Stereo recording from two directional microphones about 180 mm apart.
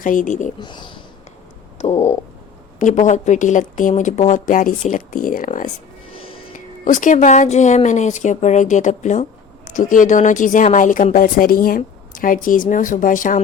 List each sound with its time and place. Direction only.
0.0 s speech: 45° left (ahead or behind)
0.6 s speech: 25° left (ahead or behind)
1.8 s a sound: 35° left (ahead or behind)
2.7 s speech: 45° left (ahead or behind)